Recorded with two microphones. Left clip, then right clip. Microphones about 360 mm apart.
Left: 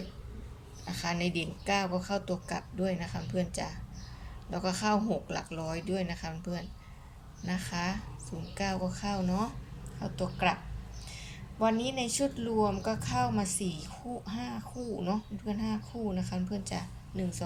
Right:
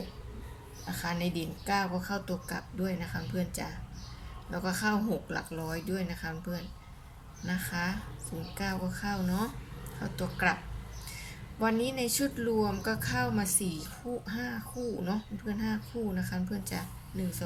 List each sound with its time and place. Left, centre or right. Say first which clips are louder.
0.9 s a woman's voice: left 1 dB; centre
11.6 s a woman's voice: even; centre